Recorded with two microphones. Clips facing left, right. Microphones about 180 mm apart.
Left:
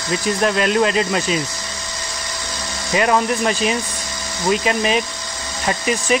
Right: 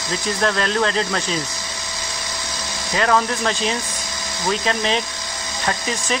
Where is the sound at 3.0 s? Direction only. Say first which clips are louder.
Left 2 dB; 15° left (ahead or behind).